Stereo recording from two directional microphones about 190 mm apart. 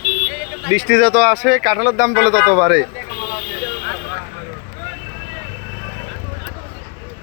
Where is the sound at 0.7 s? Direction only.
20° right (ahead or behind); by 2.8 s 5° right (ahead or behind).